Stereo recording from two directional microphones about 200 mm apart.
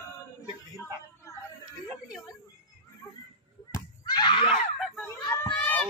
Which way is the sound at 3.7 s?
20° left (ahead or behind).